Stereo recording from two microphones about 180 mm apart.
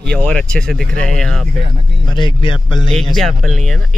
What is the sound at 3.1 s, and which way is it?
Speech, centre (ahead or behind).